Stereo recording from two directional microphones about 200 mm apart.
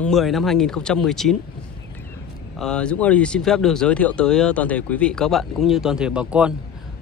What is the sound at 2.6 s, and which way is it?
Speech, 5° left (ahead or behind).